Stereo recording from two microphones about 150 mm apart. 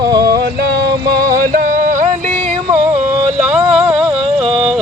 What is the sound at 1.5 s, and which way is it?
Music, 70° right (ahead or behind).